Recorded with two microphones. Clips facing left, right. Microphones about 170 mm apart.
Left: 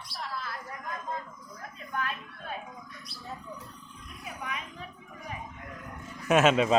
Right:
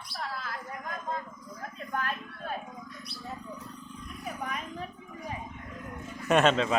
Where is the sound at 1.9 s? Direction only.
45° right (ahead or behind).